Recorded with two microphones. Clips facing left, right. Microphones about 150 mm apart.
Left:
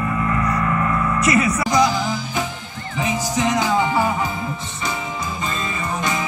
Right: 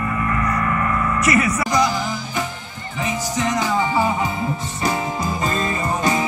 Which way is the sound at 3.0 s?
15° left (ahead or behind).